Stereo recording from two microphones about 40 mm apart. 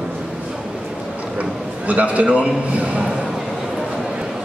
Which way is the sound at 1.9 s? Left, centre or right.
Right.